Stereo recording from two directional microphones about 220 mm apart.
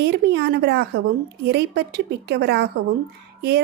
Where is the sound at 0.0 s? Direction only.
50° right (ahead or behind).